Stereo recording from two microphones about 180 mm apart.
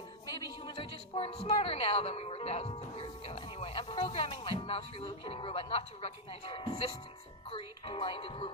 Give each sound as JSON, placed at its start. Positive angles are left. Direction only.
{"t": 0.6, "sound": "speech", "side_deg": 30}